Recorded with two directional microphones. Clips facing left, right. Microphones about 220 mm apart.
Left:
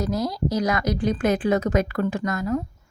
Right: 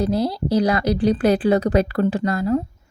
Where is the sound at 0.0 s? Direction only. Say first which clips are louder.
Right 4 dB; 30° right (ahead or behind).